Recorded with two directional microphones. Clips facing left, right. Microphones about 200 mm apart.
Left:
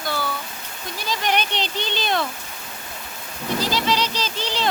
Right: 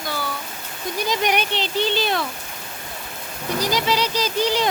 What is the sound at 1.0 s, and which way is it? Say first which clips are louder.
Speech: right 2 dB; 15° right (ahead or behind).